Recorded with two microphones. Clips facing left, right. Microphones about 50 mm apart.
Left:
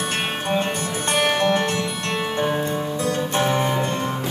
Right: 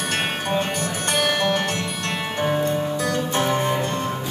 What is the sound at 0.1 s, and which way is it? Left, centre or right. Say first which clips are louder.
Music: right 2 dB; left.